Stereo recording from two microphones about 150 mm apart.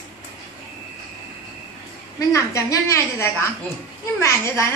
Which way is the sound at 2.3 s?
20° left (ahead or behind).